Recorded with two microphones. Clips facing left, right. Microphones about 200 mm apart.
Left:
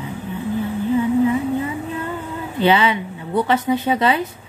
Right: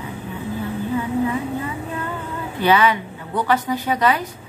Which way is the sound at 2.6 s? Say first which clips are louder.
Left 1 dB; 25° left (ahead or behind).